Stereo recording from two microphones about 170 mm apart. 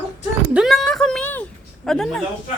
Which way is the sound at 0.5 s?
Centre (ahead or behind).